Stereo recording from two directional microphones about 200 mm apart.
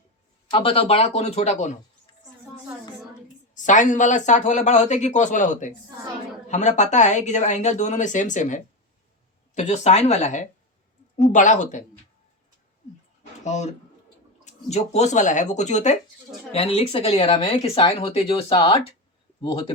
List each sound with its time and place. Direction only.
0.5 s speech: 30° left (ahead or behind)
3.5 s speech: 40° left (ahead or behind)
13.4 s speech: 35° left (ahead or behind)